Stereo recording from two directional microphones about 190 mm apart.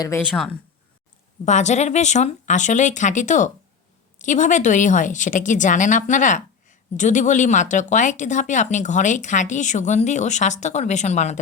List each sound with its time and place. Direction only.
0.0 s speech: 15° left (ahead or behind)
1.5 s a woman's voice: 40° left (ahead or behind)